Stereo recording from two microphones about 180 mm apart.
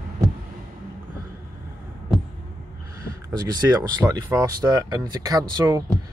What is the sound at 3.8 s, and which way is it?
Speech, 15° right (ahead or behind).